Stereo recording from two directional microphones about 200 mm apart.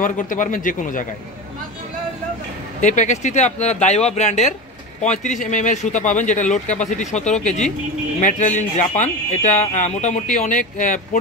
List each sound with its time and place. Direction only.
0.0 s speech: 40° left (ahead or behind)
2.8 s speech: 35° left (ahead or behind)